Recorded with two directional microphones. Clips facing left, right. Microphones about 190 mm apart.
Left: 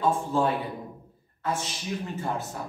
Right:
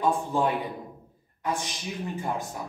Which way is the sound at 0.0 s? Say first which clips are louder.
Even; 15° right (ahead or behind).